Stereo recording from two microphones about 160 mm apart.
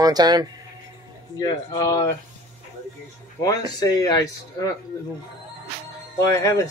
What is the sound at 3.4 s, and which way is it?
Speech, 25° left (ahead or behind).